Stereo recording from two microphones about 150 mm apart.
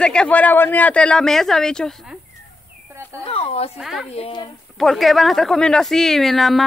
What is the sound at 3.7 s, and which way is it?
Speech, centre (ahead or behind).